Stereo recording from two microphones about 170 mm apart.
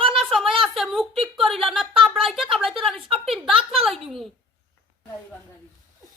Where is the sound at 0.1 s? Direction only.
Centre (ahead or behind).